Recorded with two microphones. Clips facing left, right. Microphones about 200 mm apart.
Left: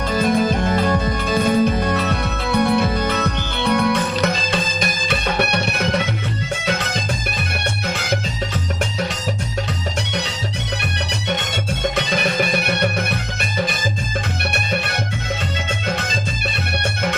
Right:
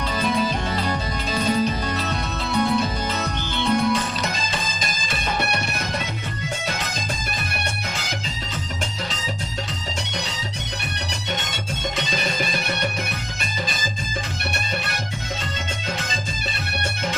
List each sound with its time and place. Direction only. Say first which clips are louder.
0.1 s music: left 6 dB; 50° left (ahead or behind); by 6.0 s 65° left (ahead or behind)
8.8 s music: left 7 dB; 60° left (ahead or behind)
11.9 s music: left 5 dB; 60° left (ahead or behind)